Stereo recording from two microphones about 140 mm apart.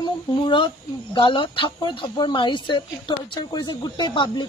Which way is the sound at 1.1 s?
35° left (ahead or behind).